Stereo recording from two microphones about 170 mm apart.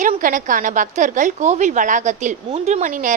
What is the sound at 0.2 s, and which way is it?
A woman's voice, 50° right (ahead or behind).